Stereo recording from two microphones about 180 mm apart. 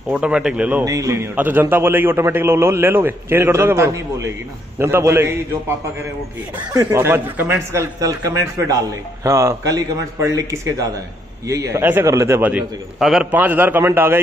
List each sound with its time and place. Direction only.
0.1 s a man's voice: 5° right (ahead or behind)
6.7 s a man's voice: 15° right (ahead or behind)